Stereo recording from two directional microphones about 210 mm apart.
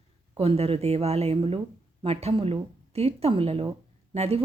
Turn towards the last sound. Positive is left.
turn(degrees=-30)  # may be behind; listen again after turning